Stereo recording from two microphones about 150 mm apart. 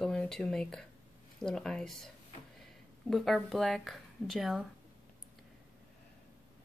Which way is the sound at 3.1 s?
Centre (ahead or behind).